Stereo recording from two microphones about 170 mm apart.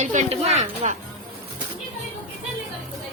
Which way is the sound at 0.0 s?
45° right (ahead or behind).